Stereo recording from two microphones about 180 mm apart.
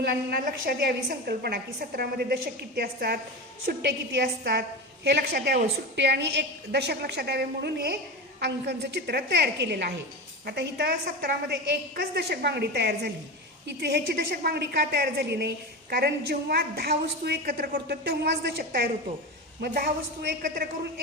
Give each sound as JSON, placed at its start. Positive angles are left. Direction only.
{"t": 0.0, "sound": "a woman's voice", "side_deg": -60}